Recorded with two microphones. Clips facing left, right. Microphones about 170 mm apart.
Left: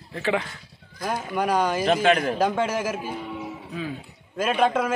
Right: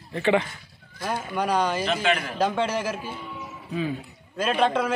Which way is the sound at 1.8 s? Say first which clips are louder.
Left 5 dB; 45° left (ahead or behind).